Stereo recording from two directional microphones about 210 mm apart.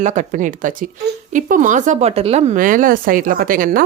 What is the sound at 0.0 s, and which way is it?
Speech, 35° right (ahead or behind).